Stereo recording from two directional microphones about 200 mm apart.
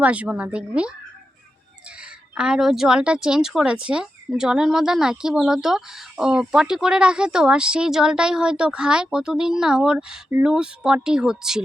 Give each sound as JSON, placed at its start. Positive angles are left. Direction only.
{"t": 0.0, "sound": "speech", "side_deg": -5}
{"t": 2.3, "sound": "speech", "side_deg": -5}